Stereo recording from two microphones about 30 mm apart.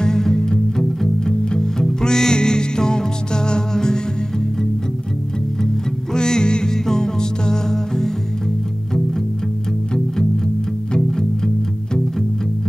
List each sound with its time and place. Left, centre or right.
0.0 s music: centre
6.1 s music: left
11.0 s music: centre